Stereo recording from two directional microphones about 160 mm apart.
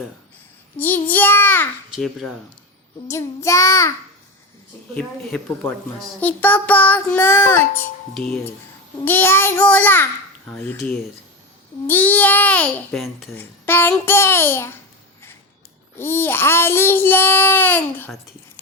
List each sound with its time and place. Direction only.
0.8 s a child's voice: 10° left (ahead or behind)
3.1 s a child's voice: 15° left (ahead or behind)
6.1 s a child's voice: 10° left (ahead or behind)
8.1 s speech: centre (ahead or behind)
9.0 s a child's voice: 10° left (ahead or behind)
13.3 s a child's voice: 15° left (ahead or behind)
16.0 s a child's voice: 15° left (ahead or behind)